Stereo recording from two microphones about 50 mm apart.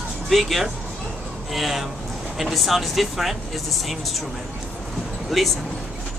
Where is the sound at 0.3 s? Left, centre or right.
Centre.